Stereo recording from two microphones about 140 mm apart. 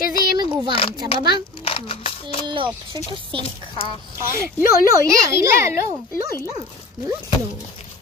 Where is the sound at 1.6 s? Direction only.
40° left (ahead or behind).